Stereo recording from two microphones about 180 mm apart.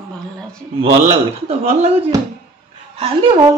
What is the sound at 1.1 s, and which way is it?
Speech, 35° right (ahead or behind).